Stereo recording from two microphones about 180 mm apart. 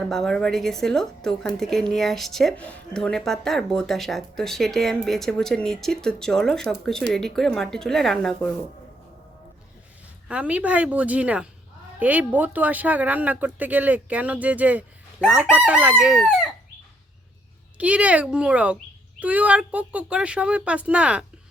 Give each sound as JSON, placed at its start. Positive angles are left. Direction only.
{"t": 0.1, "sound": "a woman's voice", "side_deg": 0}
{"t": 10.2, "sound": "speech", "side_deg": -5}
{"t": 17.7, "sound": "speech", "side_deg": -5}